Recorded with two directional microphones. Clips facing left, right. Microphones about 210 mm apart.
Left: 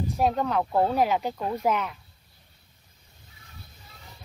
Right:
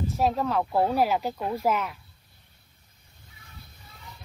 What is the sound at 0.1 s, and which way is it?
Speech, centre (ahead or behind).